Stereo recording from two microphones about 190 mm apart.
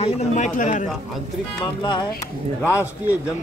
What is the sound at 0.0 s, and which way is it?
Speech, 40° left (ahead or behind).